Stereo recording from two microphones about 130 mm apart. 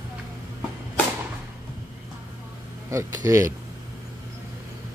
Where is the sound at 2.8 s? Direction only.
25° right (ahead or behind).